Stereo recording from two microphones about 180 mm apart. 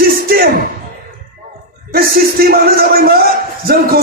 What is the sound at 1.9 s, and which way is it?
A man's voice, 55° right (ahead or behind).